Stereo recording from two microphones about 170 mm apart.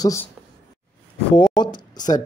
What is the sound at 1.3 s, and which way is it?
Speech, 25° left (ahead or behind).